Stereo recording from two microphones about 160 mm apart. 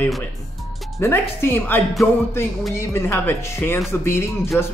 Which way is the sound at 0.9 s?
15° left (ahead or behind).